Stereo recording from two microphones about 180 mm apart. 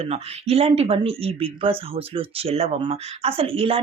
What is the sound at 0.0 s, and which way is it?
Speech, 35° right (ahead or behind).